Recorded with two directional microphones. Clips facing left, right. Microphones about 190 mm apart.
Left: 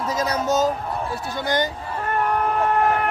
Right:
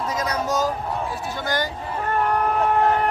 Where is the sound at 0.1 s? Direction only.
30° left (ahead or behind).